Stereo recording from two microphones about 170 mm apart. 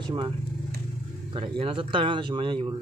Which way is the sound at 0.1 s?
30° right (ahead or behind).